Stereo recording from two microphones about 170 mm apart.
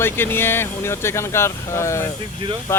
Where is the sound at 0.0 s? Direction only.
15° left (ahead or behind).